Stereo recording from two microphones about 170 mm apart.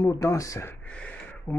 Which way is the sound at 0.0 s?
20° left (ahead or behind).